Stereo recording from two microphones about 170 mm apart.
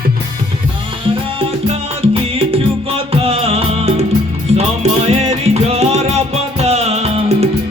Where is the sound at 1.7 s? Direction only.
35° right (ahead or behind).